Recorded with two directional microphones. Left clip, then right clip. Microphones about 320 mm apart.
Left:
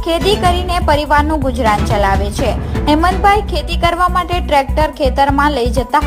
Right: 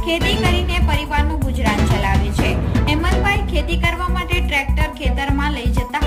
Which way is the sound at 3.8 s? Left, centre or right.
Centre.